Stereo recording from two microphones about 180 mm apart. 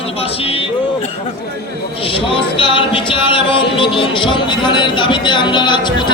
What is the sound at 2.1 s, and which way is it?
Speech, 30° left (ahead or behind).